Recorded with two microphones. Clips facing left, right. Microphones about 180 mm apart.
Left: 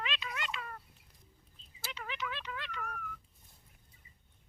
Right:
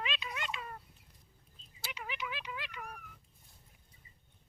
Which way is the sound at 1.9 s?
10° right (ahead or behind).